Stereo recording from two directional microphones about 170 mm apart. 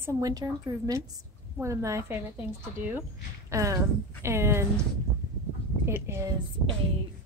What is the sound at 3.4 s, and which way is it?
A woman's voice, 20° right (ahead or behind).